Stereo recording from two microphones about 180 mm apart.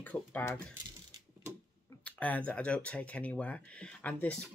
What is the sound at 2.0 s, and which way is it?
Speech, 10° left (ahead or behind).